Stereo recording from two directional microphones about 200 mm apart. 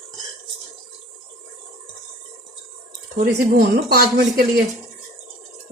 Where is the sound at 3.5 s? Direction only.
50° right (ahead or behind).